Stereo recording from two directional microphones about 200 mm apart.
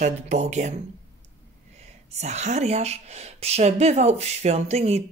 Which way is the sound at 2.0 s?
35° right (ahead or behind).